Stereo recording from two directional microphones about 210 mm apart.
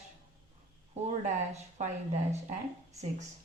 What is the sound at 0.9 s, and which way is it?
Speech, 30° right (ahead or behind).